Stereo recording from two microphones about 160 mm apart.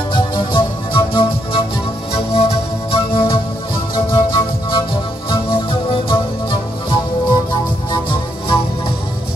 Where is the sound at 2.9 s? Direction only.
35° left (ahead or behind).